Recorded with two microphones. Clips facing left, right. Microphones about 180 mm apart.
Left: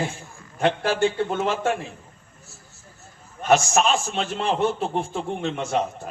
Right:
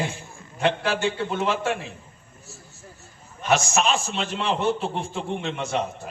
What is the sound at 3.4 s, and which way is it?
A man's voice, 45° left (ahead or behind).